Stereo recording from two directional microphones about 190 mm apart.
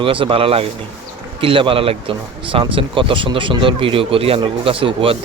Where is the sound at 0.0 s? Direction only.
25° right (ahead or behind).